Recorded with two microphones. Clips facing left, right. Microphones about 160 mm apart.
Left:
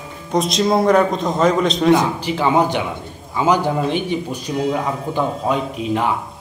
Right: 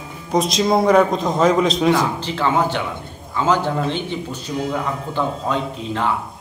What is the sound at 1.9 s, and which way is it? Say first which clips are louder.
A man's voice: left 2 dB; 15° left (ahead or behind).